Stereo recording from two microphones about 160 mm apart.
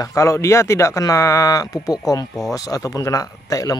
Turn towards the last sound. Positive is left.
turn(degrees=20)  # may be behind; listen again after turning